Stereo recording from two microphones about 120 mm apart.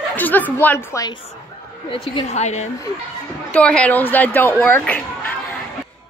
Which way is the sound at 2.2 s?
70° left (ahead or behind).